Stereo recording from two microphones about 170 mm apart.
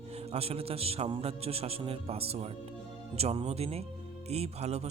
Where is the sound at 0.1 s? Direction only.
35° right (ahead or behind).